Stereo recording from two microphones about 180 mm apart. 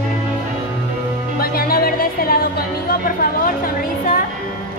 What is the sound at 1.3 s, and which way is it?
Music, 55° left (ahead or behind).